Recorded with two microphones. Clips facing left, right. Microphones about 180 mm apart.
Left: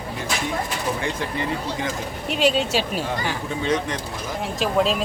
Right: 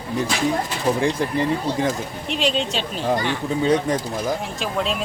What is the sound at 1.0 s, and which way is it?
Speech, 35° right (ahead or behind).